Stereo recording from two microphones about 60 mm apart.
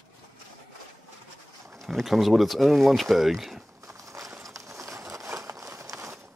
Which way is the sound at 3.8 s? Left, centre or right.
Right.